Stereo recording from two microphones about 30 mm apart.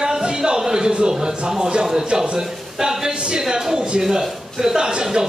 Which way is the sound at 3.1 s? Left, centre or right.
Right.